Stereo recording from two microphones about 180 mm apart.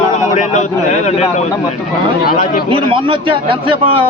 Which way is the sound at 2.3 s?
50° left (ahead or behind).